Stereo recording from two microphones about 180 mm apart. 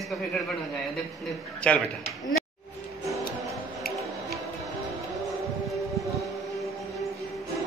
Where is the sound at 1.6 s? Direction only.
5° left (ahead or behind).